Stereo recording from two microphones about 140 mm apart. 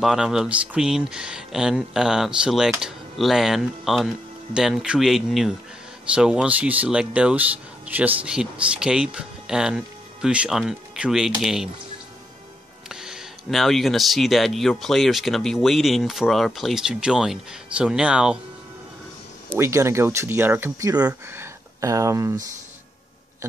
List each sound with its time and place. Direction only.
0.0 s speech: 5° right (ahead or behind)
12.8 s speech: 5° right (ahead or behind)
19.5 s speech: 20° right (ahead or behind)